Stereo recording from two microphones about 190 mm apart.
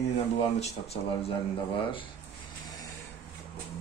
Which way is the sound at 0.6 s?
30° left (ahead or behind).